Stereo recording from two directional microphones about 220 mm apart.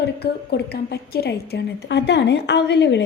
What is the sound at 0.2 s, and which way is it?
A woman's voice, 50° left (ahead or behind).